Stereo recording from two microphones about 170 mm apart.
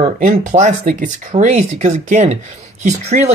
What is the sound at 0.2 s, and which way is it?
Speech, 45° right (ahead or behind).